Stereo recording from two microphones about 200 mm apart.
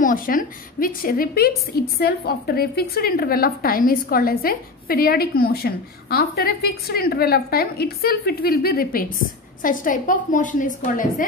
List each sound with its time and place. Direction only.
0.0 s a woman's voice: 45° left (ahead or behind)